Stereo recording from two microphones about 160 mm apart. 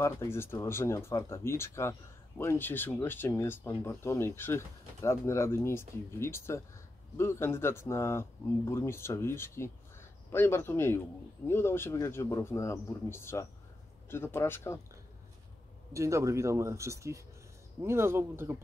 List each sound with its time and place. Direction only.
0.0 s speech: 15° left (ahead or behind)
15.9 s speech: 20° right (ahead or behind)